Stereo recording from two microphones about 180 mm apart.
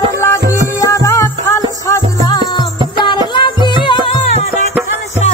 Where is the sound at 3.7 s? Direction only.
30° left (ahead or behind).